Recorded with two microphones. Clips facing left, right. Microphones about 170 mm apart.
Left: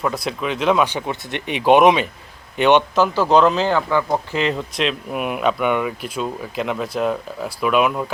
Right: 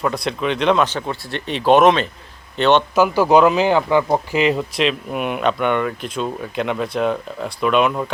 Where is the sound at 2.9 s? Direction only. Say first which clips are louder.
Right 2 dB; 10° right (ahead or behind).